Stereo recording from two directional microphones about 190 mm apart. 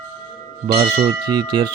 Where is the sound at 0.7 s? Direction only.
30° right (ahead or behind).